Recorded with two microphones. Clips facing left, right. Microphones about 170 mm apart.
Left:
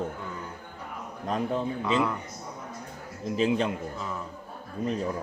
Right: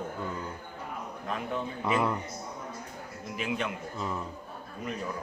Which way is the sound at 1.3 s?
35° left (ahead or behind).